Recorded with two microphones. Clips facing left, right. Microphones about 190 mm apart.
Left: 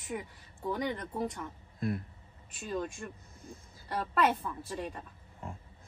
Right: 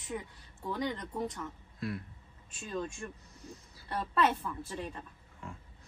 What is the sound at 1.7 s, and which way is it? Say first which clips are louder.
Speech: left 4 dB; 50° left (ahead or behind).